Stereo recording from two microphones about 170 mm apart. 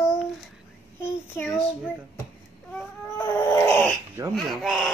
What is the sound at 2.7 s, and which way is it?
Baby cry, 15° left (ahead or behind).